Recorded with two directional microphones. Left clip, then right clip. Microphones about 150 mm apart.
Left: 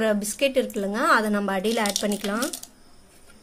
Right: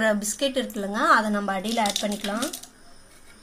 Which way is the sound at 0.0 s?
25° left (ahead or behind).